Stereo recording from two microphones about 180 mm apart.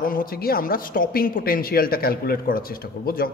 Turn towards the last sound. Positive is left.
turn(degrees=55)  # may be behind; listen again after turning